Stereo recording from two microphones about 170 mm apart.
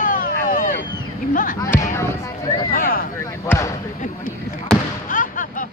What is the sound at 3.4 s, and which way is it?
Basketball bounce, 20° left (ahead or behind).